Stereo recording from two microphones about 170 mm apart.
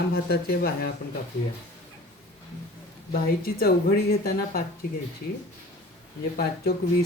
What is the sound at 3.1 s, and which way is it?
Speech, 60° left (ahead or behind).